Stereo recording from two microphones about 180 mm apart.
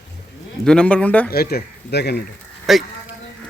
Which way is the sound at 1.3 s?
60° left (ahead or behind).